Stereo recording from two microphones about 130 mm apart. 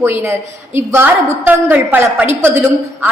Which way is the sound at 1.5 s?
15° right (ahead or behind).